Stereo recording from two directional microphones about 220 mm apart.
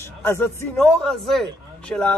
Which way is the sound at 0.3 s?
5° left (ahead or behind).